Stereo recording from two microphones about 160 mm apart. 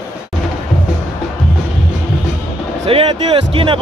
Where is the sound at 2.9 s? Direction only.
35° right (ahead or behind).